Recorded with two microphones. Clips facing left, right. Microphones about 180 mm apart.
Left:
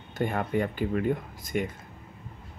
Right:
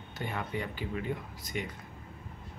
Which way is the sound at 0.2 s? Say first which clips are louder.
Left 9 dB; 50° left (ahead or behind).